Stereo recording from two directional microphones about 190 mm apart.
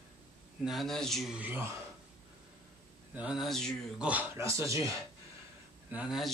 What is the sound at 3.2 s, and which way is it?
Speech, 5° right (ahead or behind).